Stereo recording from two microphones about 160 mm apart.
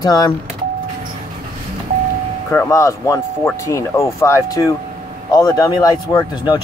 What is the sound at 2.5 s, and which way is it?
Speech, 15° left (ahead or behind).